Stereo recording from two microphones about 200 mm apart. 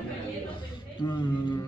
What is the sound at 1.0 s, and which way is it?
Speech, 20° left (ahead or behind).